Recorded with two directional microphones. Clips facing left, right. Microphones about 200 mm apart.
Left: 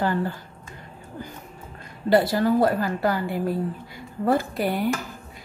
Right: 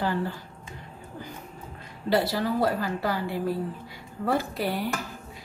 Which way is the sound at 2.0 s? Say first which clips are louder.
Left 5 dB; 50° left (ahead or behind).